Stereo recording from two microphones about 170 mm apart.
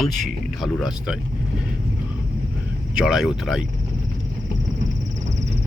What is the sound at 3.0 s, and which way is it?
Speech, centre (ahead or behind).